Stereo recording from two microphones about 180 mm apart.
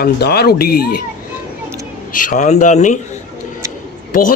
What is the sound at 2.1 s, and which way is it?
Speech, 45° left (ahead or behind).